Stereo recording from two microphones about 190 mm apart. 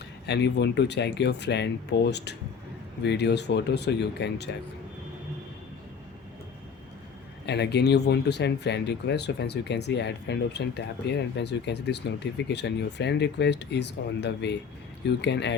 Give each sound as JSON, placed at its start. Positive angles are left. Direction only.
{"t": 0.3, "sound": "speech", "side_deg": 65}
{"t": 7.4, "sound": "speech", "side_deg": 60}